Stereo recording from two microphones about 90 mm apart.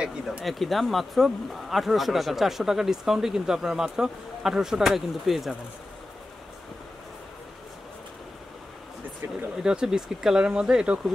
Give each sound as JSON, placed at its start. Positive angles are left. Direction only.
{"t": 0.0, "sound": "speech", "side_deg": -5}
{"t": 9.6, "sound": "speech", "side_deg": -10}